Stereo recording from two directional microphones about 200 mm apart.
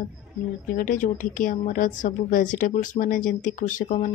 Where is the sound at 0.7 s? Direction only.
40° left (ahead or behind).